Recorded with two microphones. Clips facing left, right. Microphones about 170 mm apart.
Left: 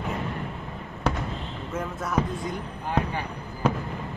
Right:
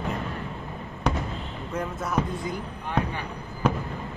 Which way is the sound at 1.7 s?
Centre (ahead or behind).